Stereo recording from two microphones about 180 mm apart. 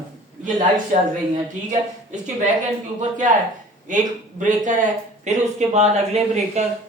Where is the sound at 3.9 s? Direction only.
45° right (ahead or behind).